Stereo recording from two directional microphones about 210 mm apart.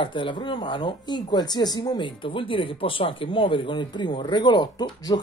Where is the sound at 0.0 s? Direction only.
25° left (ahead or behind).